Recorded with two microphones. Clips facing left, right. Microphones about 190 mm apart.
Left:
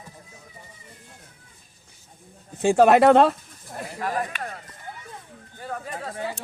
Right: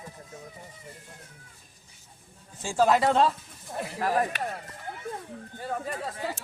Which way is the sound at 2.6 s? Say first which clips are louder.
Left 7 dB; 65° left (ahead or behind).